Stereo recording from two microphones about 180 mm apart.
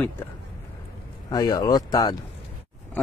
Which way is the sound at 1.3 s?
20° left (ahead or behind).